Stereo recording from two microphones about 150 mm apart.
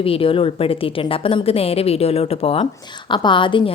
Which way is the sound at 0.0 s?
40° left (ahead or behind).